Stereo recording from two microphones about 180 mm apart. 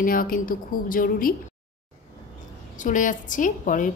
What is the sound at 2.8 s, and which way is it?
A woman's voice, 45° left (ahead or behind).